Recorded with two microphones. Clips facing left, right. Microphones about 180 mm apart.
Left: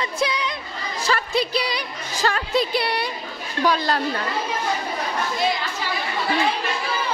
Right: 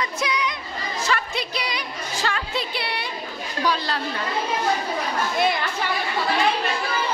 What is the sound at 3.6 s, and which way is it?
Speech, 50° left (ahead or behind).